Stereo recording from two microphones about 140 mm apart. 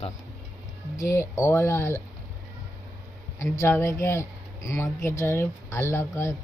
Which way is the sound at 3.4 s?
20° left (ahead or behind).